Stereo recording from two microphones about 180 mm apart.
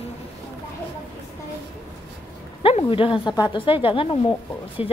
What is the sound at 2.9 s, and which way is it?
Speech, 30° left (ahead or behind).